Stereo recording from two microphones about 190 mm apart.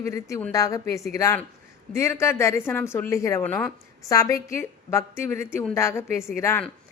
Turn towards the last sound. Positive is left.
turn(degrees=15)  # may be behind; listen again after turning